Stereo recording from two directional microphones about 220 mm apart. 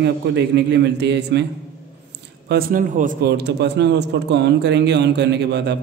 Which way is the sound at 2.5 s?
40° right (ahead or behind).